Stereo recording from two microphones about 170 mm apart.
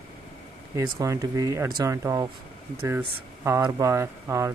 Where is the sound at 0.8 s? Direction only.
20° right (ahead or behind).